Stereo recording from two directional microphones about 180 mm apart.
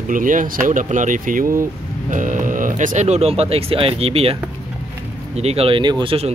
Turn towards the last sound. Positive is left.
turn(degrees=-30)  # may be behind; listen again after turning